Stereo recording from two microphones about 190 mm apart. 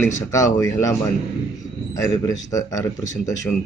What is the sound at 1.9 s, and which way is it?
A man's voice, 15° left (ahead or behind).